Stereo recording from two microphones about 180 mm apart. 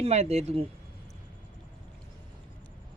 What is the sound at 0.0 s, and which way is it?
Speech, 35° right (ahead or behind).